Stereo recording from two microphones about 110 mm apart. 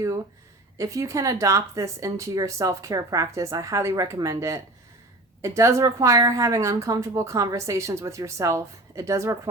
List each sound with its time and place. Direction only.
0.8 s a woman's voice: 30° right (ahead or behind)